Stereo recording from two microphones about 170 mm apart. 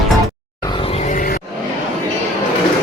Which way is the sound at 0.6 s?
30° left (ahead or behind).